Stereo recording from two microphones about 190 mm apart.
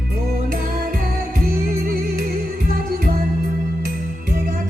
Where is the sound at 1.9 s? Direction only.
50° right (ahead or behind).